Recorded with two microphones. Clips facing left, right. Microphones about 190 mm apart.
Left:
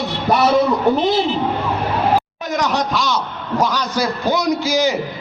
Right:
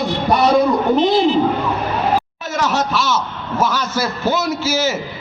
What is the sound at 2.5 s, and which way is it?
A man's voice, 15° left (ahead or behind).